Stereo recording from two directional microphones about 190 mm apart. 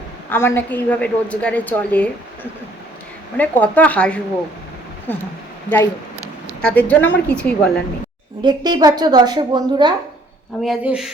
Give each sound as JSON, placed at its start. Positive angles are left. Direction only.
{"t": 0.3, "sound": "a woman's voice", "side_deg": 10}
{"t": 5.6, "sound": "a woman's voice", "side_deg": 15}
{"t": 8.4, "sound": "a woman's voice", "side_deg": -25}
{"t": 10.6, "sound": "speech", "side_deg": -5}